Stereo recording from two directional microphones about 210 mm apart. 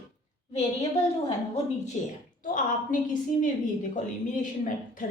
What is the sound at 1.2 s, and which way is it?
Speech, 30° left (ahead or behind).